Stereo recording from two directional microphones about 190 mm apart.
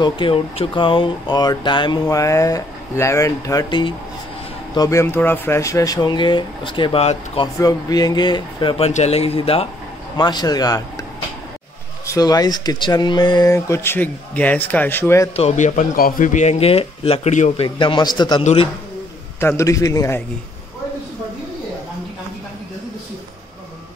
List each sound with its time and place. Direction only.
0.0 s speech: 25° left (ahead or behind)
7.5 s speech: 20° left (ahead or behind)
12.1 s speech: 20° left (ahead or behind)
15.3 s speech: 35° left (ahead or behind)
17.7 s speech: 25° left (ahead or behind)
18.4 s speech: 35° left (ahead or behind)
19.4 s speech: 15° left (ahead or behind)